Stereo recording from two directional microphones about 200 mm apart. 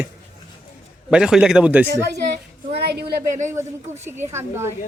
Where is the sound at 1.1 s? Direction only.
5° right (ahead or behind).